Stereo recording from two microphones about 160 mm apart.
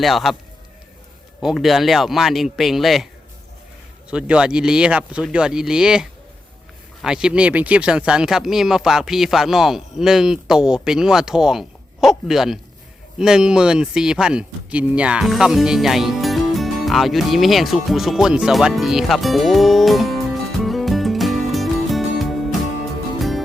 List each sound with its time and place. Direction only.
0.0 s speech: centre (ahead or behind)
1.4 s speech: centre (ahead or behind)
4.1 s speech: 5° right (ahead or behind)